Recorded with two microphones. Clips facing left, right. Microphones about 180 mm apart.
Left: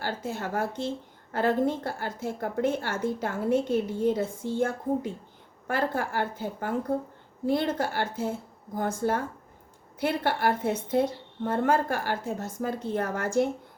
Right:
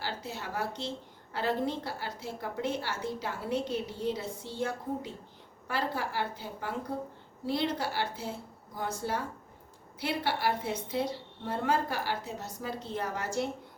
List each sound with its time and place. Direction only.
0.0 s a woman's voice: 50° left (ahead or behind)